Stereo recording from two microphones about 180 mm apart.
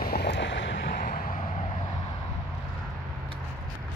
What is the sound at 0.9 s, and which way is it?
Vehicle, 55° left (ahead or behind).